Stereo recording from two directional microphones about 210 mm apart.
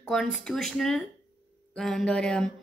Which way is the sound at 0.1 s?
Centre (ahead or behind).